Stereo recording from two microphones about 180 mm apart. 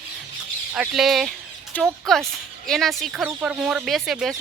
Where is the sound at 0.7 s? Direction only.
5° right (ahead or behind).